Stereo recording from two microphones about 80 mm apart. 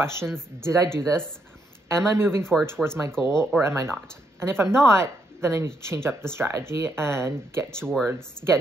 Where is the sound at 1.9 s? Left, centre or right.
Right.